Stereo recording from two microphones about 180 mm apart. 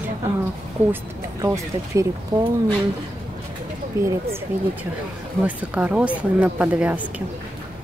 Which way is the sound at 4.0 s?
15° right (ahead or behind).